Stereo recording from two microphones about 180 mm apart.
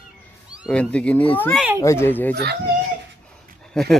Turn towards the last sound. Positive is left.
turn(degrees=0)  # may be behind; listen again after turning